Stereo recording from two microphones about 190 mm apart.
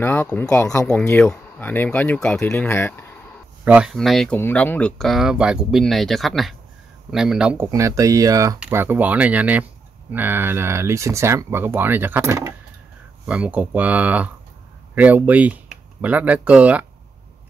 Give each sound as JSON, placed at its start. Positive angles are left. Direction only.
{"t": 0.0, "sound": "speech", "side_deg": 10}
{"t": 3.6, "sound": "speech", "side_deg": -5}